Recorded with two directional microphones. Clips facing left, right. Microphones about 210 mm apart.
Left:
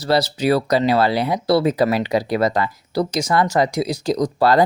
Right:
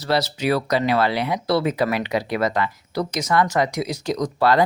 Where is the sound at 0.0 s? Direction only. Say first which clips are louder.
Left 3 dB; 35° left (ahead or behind).